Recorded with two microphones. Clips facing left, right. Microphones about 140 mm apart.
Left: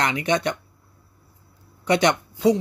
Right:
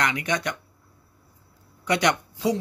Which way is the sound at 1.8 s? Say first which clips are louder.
Left 3 dB; 25° left (ahead or behind).